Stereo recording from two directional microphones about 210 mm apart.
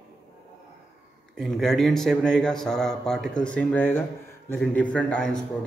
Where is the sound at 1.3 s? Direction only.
Centre (ahead or behind).